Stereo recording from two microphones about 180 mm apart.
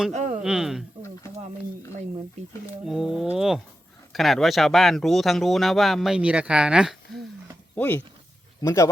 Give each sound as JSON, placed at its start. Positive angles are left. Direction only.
{"t": 0.1, "sound": "a sound", "side_deg": -40}
{"t": 0.4, "sound": "speech", "side_deg": -5}
{"t": 2.8, "sound": "speech", "side_deg": 0}
{"t": 7.8, "sound": "speech", "side_deg": 10}